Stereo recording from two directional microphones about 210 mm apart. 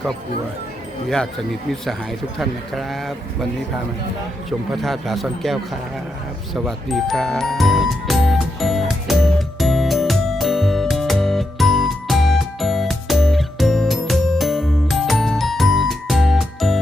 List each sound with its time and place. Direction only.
1.0 s a man's voice: 5° left (ahead or behind)
2.4 s a man's voice: centre (ahead or behind)
4.7 s a man's voice: centre (ahead or behind)
6.6 s music: centre (ahead or behind)